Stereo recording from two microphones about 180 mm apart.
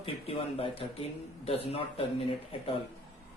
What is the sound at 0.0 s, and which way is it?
Speech, 30° left (ahead or behind).